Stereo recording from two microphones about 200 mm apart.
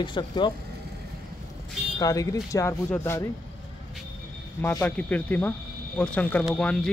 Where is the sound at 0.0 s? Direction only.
25° left (ahead or behind).